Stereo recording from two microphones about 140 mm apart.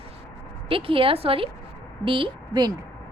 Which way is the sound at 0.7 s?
40° right (ahead or behind).